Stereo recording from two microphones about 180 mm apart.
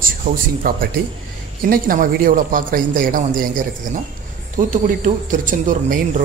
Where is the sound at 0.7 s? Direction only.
50° right (ahead or behind).